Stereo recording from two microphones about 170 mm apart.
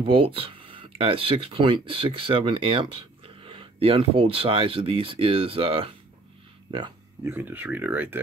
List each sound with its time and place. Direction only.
0.0 s speech: 30° right (ahead or behind)
7.2 s speech: 10° right (ahead or behind)